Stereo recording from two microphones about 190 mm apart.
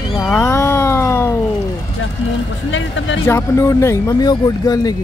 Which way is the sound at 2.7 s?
80° left.